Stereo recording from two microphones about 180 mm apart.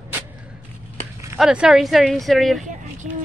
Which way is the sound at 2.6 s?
40° right (ahead or behind).